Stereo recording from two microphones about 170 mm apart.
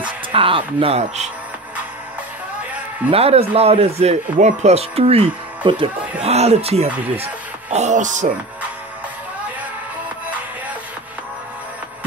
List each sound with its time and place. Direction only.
0.3 s speech: 30° right (ahead or behind)
3.1 s speech: 35° right (ahead or behind)